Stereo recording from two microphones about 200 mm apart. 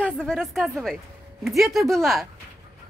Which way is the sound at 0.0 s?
5° left (ahead or behind).